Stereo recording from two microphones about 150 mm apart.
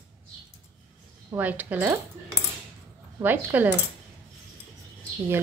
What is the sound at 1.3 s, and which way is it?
Speech, 10° right (ahead or behind).